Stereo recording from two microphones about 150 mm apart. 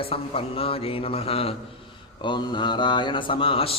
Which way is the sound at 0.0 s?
40° left (ahead or behind).